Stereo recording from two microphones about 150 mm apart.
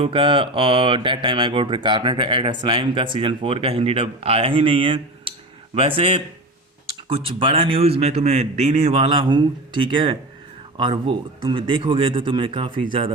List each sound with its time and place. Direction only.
0.0 s a man's voice: 35° right (ahead or behind)